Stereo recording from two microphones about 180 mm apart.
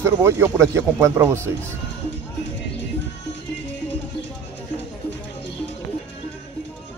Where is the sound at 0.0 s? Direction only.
15° right (ahead or behind).